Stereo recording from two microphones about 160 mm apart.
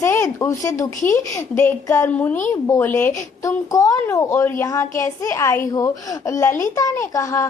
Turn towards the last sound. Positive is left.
turn(degrees=15)  # may be behind; listen again after turning